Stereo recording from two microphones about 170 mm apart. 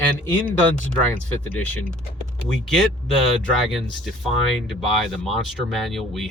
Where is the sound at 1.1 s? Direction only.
10° left (ahead or behind).